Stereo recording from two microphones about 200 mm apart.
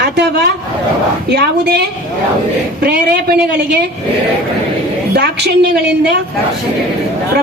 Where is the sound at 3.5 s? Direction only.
55° right (ahead or behind).